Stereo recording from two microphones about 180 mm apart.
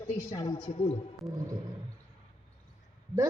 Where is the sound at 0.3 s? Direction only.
25° left (ahead or behind).